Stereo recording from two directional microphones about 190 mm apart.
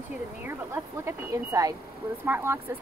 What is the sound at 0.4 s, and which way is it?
Speech, 15° right (ahead or behind).